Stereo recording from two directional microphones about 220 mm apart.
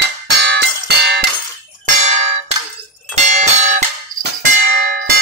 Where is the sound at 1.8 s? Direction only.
30° right (ahead or behind).